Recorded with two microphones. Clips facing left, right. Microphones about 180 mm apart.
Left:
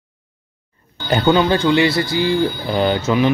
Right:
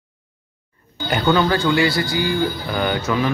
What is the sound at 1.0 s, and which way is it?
A man's voice, 25° left (ahead or behind).